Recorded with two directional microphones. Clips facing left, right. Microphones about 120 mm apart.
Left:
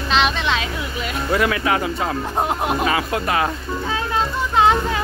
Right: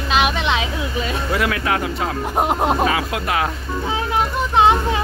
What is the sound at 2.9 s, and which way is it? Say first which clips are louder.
Speech: even; centre (ahead or behind).